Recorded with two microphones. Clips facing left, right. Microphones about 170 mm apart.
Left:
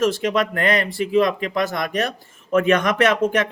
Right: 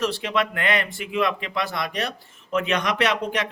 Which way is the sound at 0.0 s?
45° left (ahead or behind).